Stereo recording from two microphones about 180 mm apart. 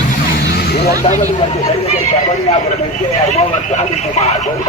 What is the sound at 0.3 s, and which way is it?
Vehicle, 60° left (ahead or behind).